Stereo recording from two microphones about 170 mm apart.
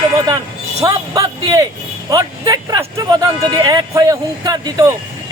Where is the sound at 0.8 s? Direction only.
20° right (ahead or behind).